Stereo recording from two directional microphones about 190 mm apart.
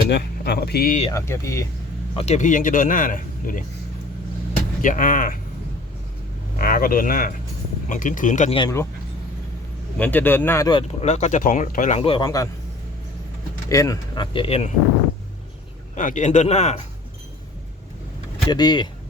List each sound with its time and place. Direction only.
0.1 s speech: 55° left (ahead or behind)
1.1 s speech: 15° left (ahead or behind)
2.1 s a man's voice: 35° left (ahead or behind)
4.8 s a man's voice: 45° left (ahead or behind)
6.6 s a man's voice: 50° left (ahead or behind)
8.5 s speech: 25° left (ahead or behind)
10.0 s speech: 10° left (ahead or behind)
11.0 s speech: 35° left (ahead or behind)
12.0 s speech: 25° left (ahead or behind)
13.7 s speech: 15° left (ahead or behind)
16.0 s speech: 40° left (ahead or behind)
18.4 s speech: 20° left (ahead or behind)